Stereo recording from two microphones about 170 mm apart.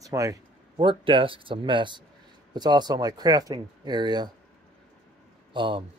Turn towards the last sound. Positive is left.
turn(degrees=-30)  # may be behind; listen again after turning